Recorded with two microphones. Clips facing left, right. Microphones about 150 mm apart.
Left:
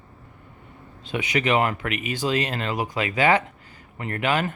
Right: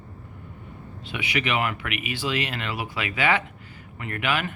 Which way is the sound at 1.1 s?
40° left (ahead or behind).